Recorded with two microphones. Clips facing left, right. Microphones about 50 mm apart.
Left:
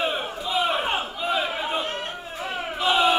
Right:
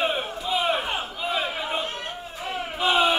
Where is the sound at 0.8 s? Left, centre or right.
Left.